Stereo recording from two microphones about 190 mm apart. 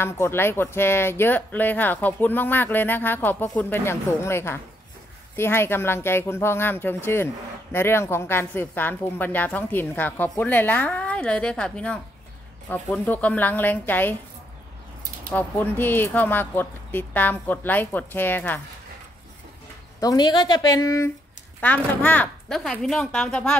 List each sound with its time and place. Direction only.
0.0 s speech: 10° left (ahead or behind)
15.3 s speech: 10° left (ahead or behind)
20.0 s a woman's voice: 20° left (ahead or behind); by 23.5 s 5° left (ahead or behind)